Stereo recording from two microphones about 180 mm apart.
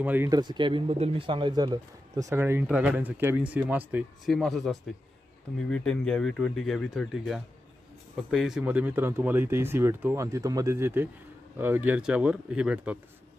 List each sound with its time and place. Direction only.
0.0 s speech: 10° right (ahead or behind)
0.3 s speech: 25° right (ahead or behind); by 13.0 s 10° right (ahead or behind)